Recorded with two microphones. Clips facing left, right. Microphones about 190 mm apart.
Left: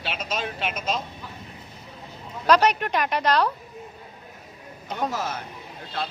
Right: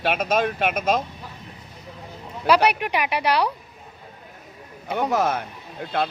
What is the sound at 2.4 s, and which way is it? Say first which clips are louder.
Speech: right 1 dB; 10° right (ahead or behind).